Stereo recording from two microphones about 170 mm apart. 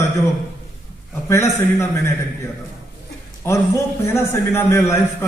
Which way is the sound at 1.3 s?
15° left (ahead or behind).